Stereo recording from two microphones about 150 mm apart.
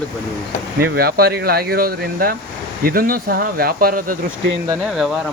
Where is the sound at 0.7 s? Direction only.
90° right.